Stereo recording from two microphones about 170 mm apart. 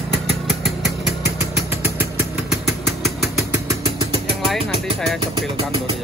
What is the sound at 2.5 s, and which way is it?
Vehicle, centre (ahead or behind).